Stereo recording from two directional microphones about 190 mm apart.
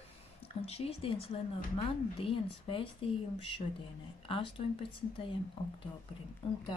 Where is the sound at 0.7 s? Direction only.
30° left (ahead or behind).